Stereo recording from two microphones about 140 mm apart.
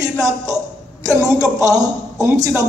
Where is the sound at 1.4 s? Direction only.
25° right (ahead or behind).